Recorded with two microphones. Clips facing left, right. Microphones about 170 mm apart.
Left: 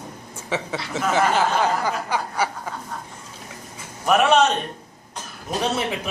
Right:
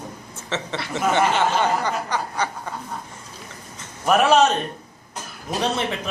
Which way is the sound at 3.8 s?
Centre (ahead or behind).